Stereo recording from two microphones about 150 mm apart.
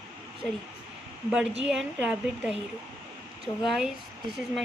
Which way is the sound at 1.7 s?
5° right (ahead or behind).